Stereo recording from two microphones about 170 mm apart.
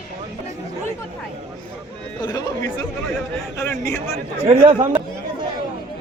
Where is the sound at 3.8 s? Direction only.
20° left (ahead or behind).